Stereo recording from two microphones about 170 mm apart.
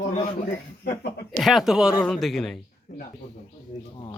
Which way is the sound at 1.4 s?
Centre (ahead or behind).